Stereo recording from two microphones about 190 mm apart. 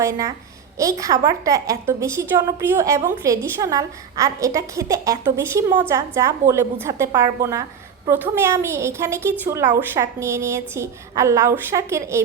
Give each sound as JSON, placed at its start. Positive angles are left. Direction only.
{"t": 0.8, "sound": "a woman's voice", "side_deg": -15}